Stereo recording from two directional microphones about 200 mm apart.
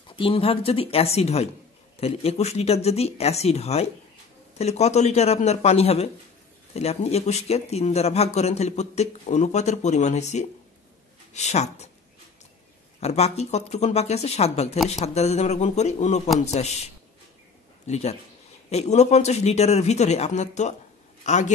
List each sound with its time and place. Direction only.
0.1 s speech: 25° left (ahead or behind)
13.0 s speech: 35° left (ahead or behind)